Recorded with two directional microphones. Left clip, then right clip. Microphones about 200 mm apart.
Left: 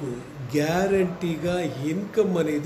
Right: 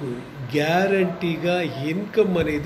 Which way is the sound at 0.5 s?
5° left (ahead or behind).